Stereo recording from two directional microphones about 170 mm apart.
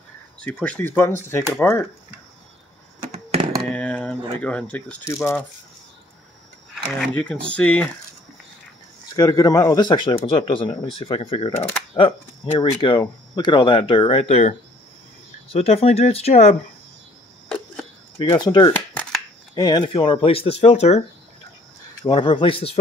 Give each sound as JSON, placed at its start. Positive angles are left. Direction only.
{"t": 0.4, "sound": "speech", "side_deg": 5}
{"t": 3.1, "sound": "a sound", "side_deg": -35}
{"t": 3.7, "sound": "speech", "side_deg": 5}
{"t": 6.7, "sound": "speech", "side_deg": 5}
{"t": 9.1, "sound": "speech", "side_deg": 20}
{"t": 15.5, "sound": "speech", "side_deg": 35}
{"t": 18.3, "sound": "speech", "side_deg": 25}
{"t": 18.7, "sound": "shuffling cards", "side_deg": 10}
{"t": 19.5, "sound": "speech", "side_deg": 25}
{"t": 22.0, "sound": "speech", "side_deg": 25}